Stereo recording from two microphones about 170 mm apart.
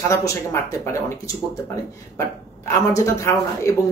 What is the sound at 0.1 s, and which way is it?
Speech, 15° left (ahead or behind).